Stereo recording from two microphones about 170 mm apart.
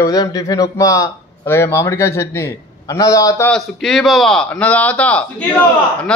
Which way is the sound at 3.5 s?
5° left (ahead or behind).